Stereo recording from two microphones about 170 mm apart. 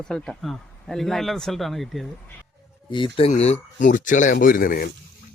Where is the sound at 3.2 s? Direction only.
40° left (ahead or behind); by 4.9 s 55° left (ahead or behind).